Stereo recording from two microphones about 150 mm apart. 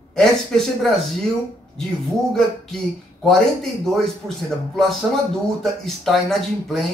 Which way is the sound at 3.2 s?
Centre (ahead or behind).